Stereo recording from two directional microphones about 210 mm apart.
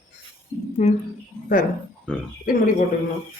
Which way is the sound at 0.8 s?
35° left (ahead or behind).